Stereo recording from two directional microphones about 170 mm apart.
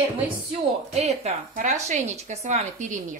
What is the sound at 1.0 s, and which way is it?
Speech, 40° right (ahead or behind).